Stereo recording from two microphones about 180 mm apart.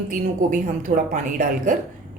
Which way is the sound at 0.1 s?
45° right (ahead or behind).